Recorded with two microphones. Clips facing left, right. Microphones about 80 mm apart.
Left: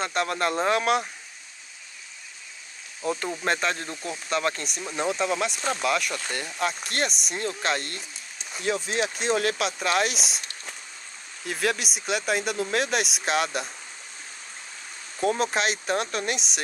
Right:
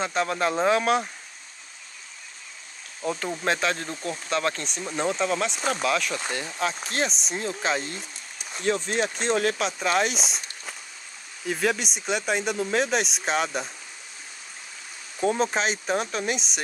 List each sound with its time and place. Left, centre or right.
0.0 s speech: centre
3.0 s speech: centre
15.1 s speech: centre